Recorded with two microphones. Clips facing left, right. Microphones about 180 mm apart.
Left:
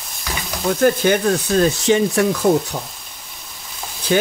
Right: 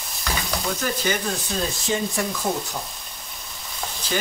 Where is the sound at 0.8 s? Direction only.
65° left (ahead or behind).